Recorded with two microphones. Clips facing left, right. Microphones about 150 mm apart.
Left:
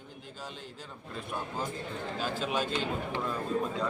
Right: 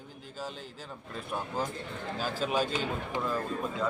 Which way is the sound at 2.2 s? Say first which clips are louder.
Right 2 dB; 5° right (ahead or behind).